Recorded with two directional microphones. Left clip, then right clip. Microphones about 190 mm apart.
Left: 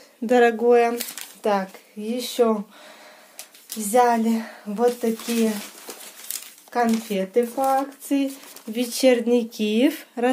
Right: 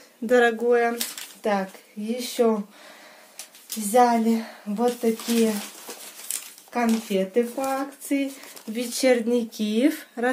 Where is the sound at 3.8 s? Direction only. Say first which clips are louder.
Left 1 dB; 35° left (ahead or behind).